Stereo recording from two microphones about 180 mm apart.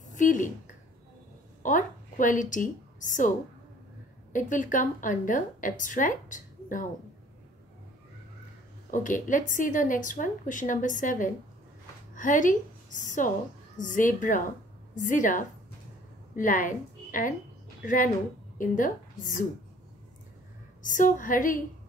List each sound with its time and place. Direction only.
0.1 s a woman's voice: 45° left (ahead or behind)
8.9 s a woman's voice: 45° left (ahead or behind)
20.8 s a woman's voice: 45° left (ahead or behind)